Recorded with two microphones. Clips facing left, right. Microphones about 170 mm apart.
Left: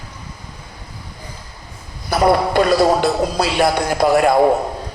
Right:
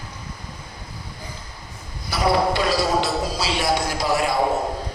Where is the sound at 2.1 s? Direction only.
50° left (ahead or behind).